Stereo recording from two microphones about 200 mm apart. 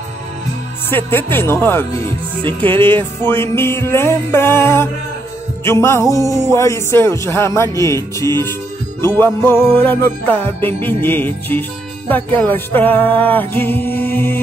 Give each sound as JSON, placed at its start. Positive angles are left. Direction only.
{"t": 0.8, "sound": "music", "side_deg": 10}
{"t": 2.4, "sound": "music", "side_deg": -25}
{"t": 3.3, "sound": "music", "side_deg": 10}